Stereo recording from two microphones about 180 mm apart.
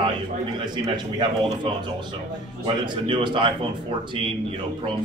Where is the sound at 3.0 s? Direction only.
25° right (ahead or behind).